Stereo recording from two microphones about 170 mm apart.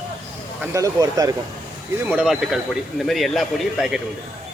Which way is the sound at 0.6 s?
20° right (ahead or behind).